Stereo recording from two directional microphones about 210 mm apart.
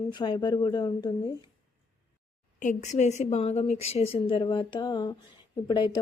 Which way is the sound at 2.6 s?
35° left (ahead or behind).